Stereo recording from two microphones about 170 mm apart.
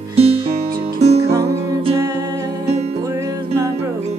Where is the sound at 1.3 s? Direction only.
15° right (ahead or behind).